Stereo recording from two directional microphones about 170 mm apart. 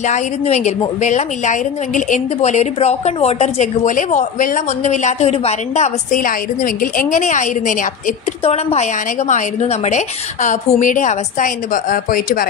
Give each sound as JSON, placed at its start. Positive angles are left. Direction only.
{"t": 0.0, "sound": "a woman's voice", "side_deg": 45}
{"t": 6.1, "sound": "a woman's voice", "side_deg": 55}